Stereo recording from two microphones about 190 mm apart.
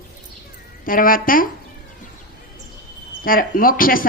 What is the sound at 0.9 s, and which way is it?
Speech, 45° left (ahead or behind).